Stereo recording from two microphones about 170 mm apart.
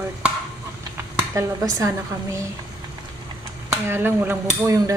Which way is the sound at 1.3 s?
20° right (ahead or behind).